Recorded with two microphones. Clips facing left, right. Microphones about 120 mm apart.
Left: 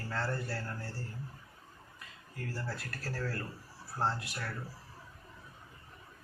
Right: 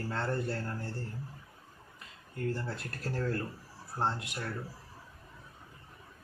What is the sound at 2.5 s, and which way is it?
Speech, 20° right (ahead or behind).